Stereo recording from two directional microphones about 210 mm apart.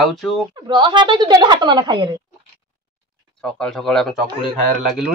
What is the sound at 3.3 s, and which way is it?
Speech, 5° left (ahead or behind).